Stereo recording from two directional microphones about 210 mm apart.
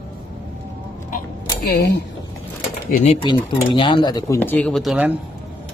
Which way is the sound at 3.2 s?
25° left (ahead or behind).